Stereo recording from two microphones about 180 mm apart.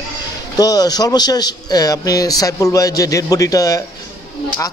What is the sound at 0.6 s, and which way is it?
A man's voice, 20° left (ahead or behind).